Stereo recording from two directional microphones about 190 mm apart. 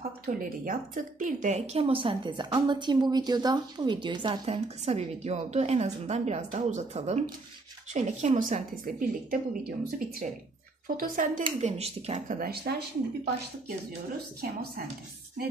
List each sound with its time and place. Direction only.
0.3 s a woman's voice: 45° right (ahead or behind)